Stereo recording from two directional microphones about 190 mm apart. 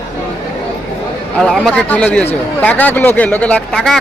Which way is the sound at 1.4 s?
Centre (ahead or behind).